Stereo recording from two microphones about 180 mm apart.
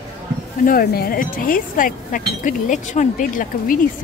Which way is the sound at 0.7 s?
55° left (ahead or behind).